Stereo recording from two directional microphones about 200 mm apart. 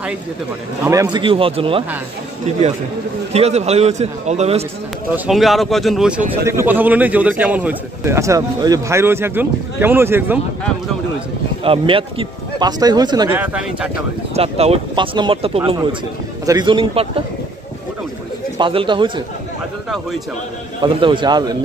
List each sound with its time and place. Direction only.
0.8 s speech: 15° right (ahead or behind)
3.3 s a man's voice: 30° right (ahead or behind)
5.1 s a man's voice: 5° right (ahead or behind)
11.6 s speech: 25° right (ahead or behind)
13.3 s a man's voice: 10° right (ahead or behind)
14.3 s speech: 30° right (ahead or behind)
18.6 s speech: 25° right (ahead or behind)
20.8 s speech: 25° right (ahead or behind)